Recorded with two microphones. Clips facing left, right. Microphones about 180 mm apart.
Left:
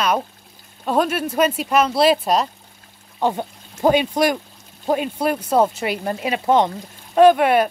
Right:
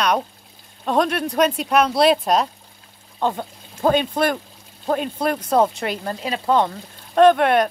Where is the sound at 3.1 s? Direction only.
15° left (ahead or behind).